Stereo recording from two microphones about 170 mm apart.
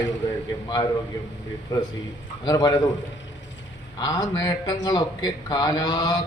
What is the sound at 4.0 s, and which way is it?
A man's voice, 20° left (ahead or behind).